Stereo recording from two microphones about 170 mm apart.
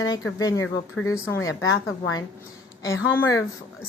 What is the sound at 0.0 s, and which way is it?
A woman's voice, 20° left (ahead or behind).